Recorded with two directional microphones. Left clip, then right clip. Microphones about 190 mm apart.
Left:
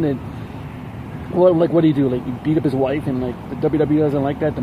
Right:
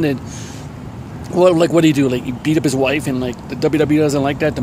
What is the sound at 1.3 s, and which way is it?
Speech, 15° right (ahead or behind).